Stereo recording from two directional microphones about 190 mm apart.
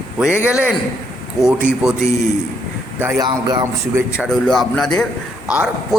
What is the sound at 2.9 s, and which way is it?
Speech, 15° right (ahead or behind).